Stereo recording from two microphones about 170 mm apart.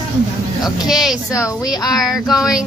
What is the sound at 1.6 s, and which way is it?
Speech, 25° left (ahead or behind).